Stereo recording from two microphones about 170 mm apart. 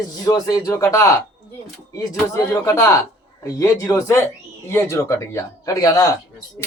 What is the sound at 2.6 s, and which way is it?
Speech, 15° left (ahead or behind).